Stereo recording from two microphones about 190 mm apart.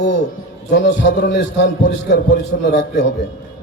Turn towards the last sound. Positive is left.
turn(degrees=65)  # may be behind; listen again after turning